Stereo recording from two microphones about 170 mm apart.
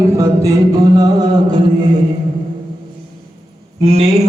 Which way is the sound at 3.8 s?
40° right (ahead or behind).